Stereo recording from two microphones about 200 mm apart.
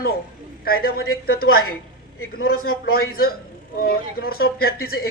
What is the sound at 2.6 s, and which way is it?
A man's voice, 50° left (ahead or behind).